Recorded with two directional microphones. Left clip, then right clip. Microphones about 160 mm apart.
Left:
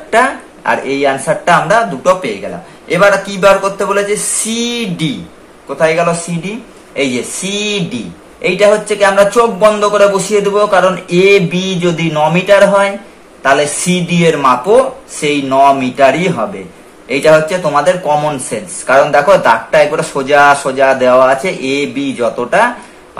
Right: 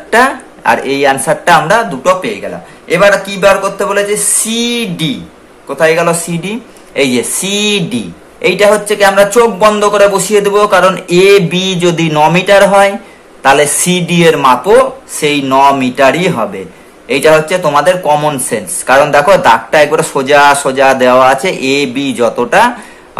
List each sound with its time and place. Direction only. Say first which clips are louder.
0.1 s a man's voice: right 2 dB; 30° right (ahead or behind)